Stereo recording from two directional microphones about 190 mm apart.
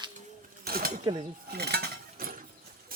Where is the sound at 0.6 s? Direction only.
50° right (ahead or behind).